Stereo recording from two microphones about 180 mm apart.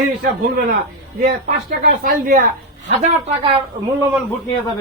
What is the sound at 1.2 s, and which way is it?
A man's voice, 50° right (ahead or behind).